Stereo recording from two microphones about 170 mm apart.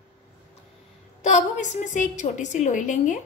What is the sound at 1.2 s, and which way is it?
A woman's voice, 45° left (ahead or behind).